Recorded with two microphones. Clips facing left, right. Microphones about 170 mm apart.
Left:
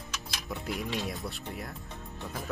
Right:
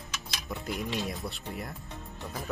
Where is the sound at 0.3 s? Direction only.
Centre (ahead or behind).